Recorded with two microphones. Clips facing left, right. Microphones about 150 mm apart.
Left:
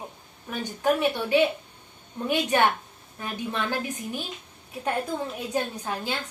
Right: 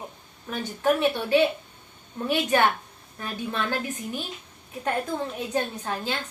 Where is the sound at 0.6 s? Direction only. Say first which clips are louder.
Right 1 dB; 15° left (ahead or behind).